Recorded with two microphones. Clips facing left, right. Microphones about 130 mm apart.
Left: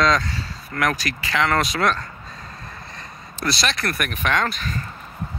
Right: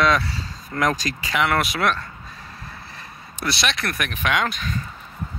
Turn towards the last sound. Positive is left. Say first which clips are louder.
# even
turn(degrees=0)  # may be behind; listen again after turning